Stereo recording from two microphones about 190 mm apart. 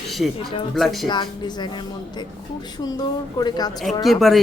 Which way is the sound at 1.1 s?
25° left (ahead or behind).